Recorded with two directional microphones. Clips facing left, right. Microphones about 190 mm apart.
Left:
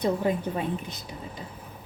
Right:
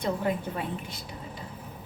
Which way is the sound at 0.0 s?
20° left (ahead or behind).